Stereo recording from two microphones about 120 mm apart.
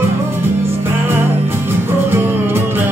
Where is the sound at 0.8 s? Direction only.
20° right (ahead or behind).